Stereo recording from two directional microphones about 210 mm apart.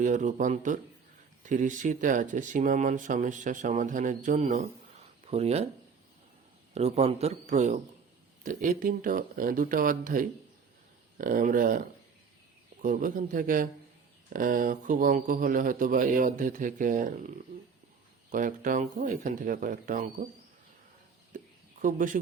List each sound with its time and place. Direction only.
0.0 s speech: 35° right (ahead or behind)
6.7 s speech: 30° right (ahead or behind)
12.8 s speech: 40° right (ahead or behind)
21.3 s a sound: 40° right (ahead or behind)